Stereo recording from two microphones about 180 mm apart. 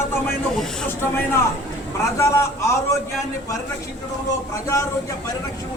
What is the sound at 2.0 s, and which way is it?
Speech, 15° left (ahead or behind).